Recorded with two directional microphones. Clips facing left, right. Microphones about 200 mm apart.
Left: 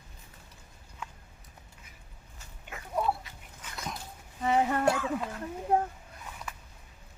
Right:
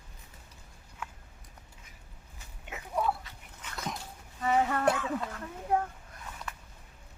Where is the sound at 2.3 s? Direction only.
15° right (ahead or behind).